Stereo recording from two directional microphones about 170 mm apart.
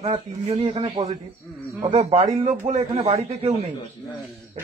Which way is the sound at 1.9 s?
40° right (ahead or behind).